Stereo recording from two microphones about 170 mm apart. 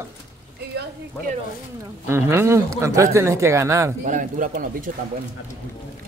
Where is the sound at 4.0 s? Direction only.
50° right (ahead or behind).